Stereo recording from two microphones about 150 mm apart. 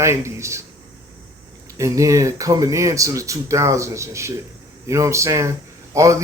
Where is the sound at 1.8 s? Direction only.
20° right (ahead or behind).